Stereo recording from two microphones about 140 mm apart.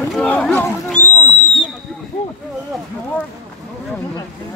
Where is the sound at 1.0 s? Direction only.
60° left (ahead or behind).